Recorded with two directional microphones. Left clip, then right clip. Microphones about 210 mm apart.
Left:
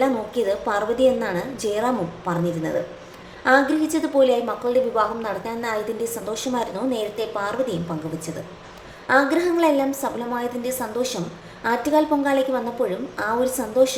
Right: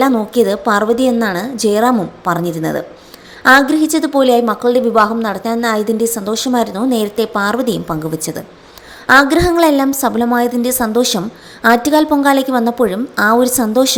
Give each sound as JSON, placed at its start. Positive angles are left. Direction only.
{"t": 0.0, "sound": "a woman's voice", "side_deg": -40}